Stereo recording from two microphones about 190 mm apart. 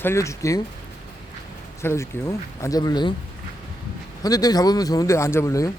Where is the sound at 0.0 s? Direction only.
15° left (ahead or behind).